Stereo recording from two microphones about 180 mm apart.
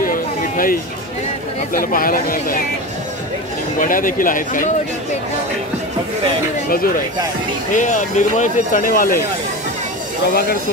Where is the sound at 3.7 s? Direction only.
50° left (ahead or behind).